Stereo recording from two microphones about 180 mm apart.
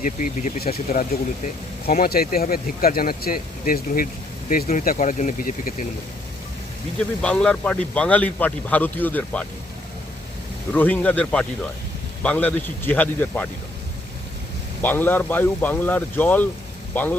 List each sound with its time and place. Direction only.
0.0 s speech: 45° left (ahead or behind)
7.2 s a man's voice: 5° left (ahead or behind)
10.8 s a man's voice: 10° left (ahead or behind)
14.8 s a man's voice: 10° left (ahead or behind)